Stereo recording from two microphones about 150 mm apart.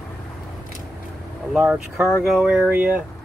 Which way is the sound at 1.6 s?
5° right (ahead or behind).